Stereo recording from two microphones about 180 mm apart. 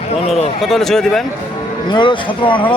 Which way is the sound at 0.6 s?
Centre (ahead or behind).